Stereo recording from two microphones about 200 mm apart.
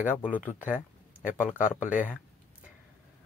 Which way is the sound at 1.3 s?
10° left (ahead or behind).